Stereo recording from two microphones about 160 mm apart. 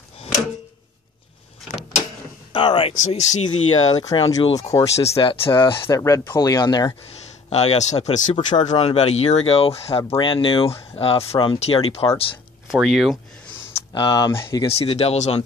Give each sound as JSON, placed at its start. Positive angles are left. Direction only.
{"t": 2.5, "sound": "speech", "side_deg": 30}
{"t": 3.4, "sound": "speech", "side_deg": 25}
{"t": 4.9, "sound": "speech", "side_deg": 40}
{"t": 7.4, "sound": "speech", "side_deg": 45}
{"t": 12.7, "sound": "speech", "side_deg": -5}
{"t": 13.9, "sound": "speech", "side_deg": 25}
{"t": 14.7, "sound": "speech", "side_deg": 40}